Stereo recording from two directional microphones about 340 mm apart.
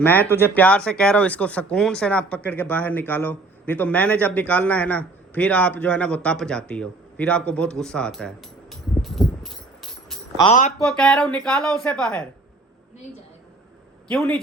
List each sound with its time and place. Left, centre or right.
0.0 s speech: centre
9.0 s music: centre
10.4 s speech: left
10.8 s speech: centre
14.1 s speech: centre